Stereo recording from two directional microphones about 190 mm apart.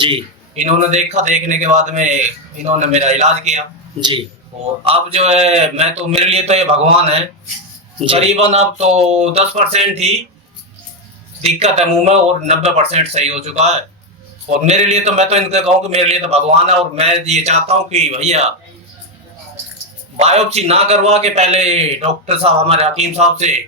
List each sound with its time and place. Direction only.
0.0 s a man's voice: 30° right (ahead or behind)
4.8 s a man's voice: 30° right (ahead or behind)
11.4 s a man's voice: 35° right (ahead or behind)
20.1 s a man's voice: 35° right (ahead or behind)